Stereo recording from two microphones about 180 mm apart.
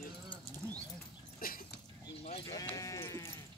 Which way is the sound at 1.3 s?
55° left (ahead or behind).